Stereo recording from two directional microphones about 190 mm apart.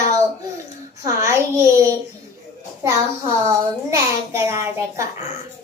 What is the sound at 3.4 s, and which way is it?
A child's voice, 15° right (ahead or behind).